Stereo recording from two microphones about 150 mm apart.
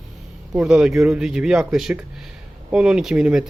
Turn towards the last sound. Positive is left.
turn(degrees=-5)  # may be behind; listen again after turning